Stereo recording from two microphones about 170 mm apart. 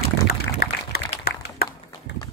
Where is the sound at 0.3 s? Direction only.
65° left (ahead or behind).